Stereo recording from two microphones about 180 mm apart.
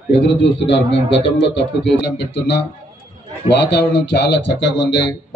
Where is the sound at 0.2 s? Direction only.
90° left.